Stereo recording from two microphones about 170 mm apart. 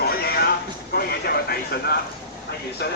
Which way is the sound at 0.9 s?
65° left (ahead or behind).